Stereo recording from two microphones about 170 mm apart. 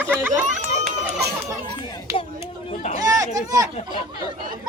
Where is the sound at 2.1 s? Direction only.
20° right (ahead or behind).